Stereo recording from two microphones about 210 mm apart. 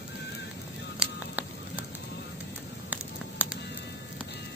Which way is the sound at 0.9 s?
5° right (ahead or behind).